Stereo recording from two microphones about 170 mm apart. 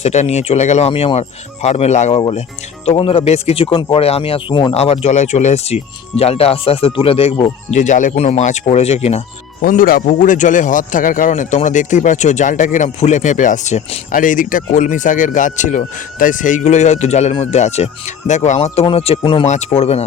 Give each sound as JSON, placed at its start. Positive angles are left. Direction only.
{"t": 0.0, "sound": "speech", "side_deg": 40}
{"t": 7.7, "sound": "a man's voice", "side_deg": 45}
{"t": 9.6, "sound": "a man's voice", "side_deg": 55}